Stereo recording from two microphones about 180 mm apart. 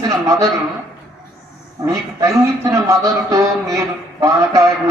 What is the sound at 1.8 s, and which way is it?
Speech, 15° right (ahead or behind).